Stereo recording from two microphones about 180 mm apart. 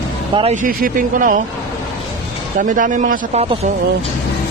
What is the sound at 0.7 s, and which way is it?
Speech, 50° right (ahead or behind).